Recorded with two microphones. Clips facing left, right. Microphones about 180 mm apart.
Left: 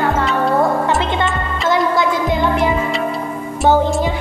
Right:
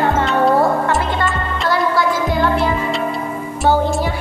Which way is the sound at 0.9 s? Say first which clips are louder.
Left 1 dB; 20° left (ahead or behind).